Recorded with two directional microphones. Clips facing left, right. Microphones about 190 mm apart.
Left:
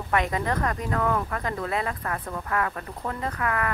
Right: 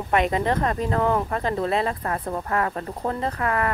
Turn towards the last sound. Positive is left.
turn(degrees=-30)  # may be behind; listen again after turning